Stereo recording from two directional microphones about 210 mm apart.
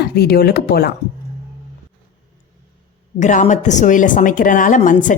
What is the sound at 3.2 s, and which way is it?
A woman's voice, 35° left (ahead or behind).